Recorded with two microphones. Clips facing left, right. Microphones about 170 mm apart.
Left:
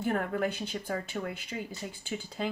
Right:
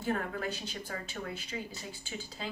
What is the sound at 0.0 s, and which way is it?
Speech, 60° left (ahead or behind).